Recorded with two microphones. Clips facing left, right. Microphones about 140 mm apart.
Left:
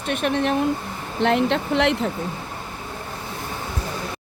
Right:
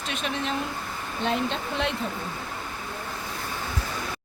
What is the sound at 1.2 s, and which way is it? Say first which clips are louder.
Speech: left 8 dB; 75° left (ahead or behind).